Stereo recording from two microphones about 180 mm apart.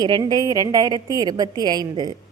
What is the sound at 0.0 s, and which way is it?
A woman's voice, 20° right (ahead or behind).